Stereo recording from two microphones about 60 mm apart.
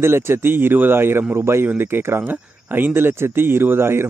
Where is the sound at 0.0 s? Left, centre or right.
Right.